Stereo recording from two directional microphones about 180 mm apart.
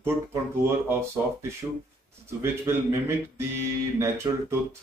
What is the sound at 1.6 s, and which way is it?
Speech, 15° right (ahead or behind).